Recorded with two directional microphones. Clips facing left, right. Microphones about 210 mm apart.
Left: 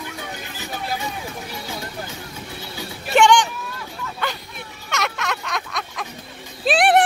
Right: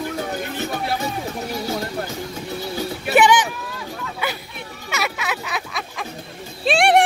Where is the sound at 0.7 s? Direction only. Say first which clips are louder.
Right 1 dB; 50° right (ahead or behind).